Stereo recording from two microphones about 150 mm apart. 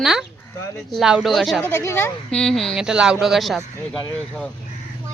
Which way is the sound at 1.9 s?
15° left (ahead or behind).